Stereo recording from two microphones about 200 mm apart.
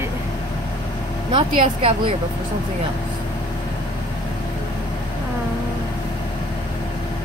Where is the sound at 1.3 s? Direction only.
25° right (ahead or behind).